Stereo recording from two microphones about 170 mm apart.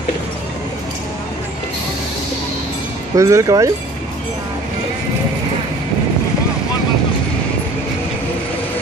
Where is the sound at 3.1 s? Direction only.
20° right (ahead or behind).